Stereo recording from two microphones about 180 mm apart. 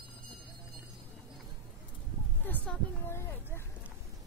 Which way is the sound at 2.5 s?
10° left (ahead or behind).